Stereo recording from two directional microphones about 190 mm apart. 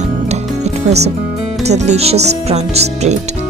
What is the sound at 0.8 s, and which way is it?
Speech, 35° right (ahead or behind).